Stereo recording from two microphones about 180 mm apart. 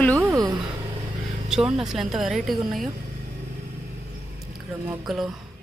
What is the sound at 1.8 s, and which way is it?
Speech, 5° right (ahead or behind).